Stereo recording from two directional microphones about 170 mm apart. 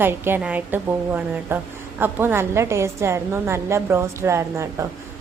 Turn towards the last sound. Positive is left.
turn(degrees=-15)  # may be behind; listen again after turning